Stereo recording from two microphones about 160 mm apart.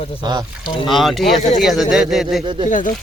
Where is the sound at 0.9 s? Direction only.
Centre (ahead or behind).